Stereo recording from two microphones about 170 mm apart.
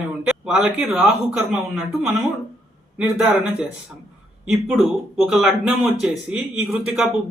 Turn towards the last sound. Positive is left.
turn(degrees=-5)  # may be behind; listen again after turning